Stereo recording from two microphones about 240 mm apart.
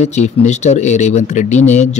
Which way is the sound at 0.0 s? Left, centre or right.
Left.